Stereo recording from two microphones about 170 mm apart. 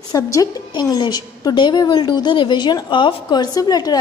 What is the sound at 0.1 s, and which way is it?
A woman's voice, 20° left (ahead or behind).